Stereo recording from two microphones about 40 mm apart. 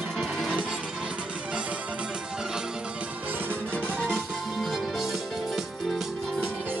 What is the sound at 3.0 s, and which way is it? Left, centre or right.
Music, right.